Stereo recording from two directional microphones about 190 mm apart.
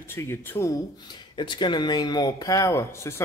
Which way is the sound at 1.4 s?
25° left (ahead or behind).